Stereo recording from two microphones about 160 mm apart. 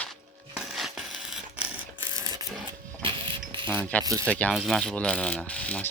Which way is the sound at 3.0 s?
30° right (ahead or behind).